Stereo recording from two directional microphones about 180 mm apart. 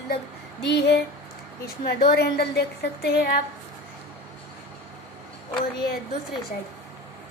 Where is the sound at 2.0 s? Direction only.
60° left (ahead or behind).